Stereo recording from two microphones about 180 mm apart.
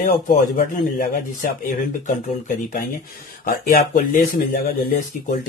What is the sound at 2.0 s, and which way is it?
Speech, 50° left (ahead or behind).